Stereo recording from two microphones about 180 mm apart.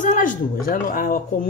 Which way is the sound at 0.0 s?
45° left (ahead or behind).